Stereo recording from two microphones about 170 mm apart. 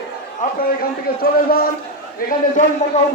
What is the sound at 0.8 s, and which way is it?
Speech, 60° left (ahead or behind).